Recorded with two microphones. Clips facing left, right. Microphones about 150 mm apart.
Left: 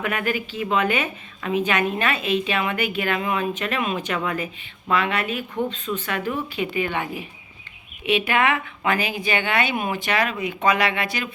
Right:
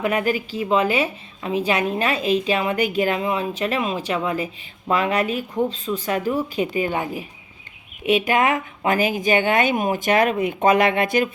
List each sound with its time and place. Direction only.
0.0 s a woman's voice: 35° right (ahead or behind); by 11.3 s 50° right (ahead or behind)